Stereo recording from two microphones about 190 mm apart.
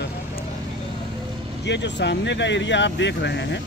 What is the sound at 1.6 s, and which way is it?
Speech, 70° left (ahead or behind).